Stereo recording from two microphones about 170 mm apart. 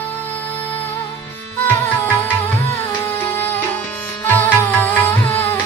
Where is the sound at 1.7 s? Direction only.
10° left (ahead or behind).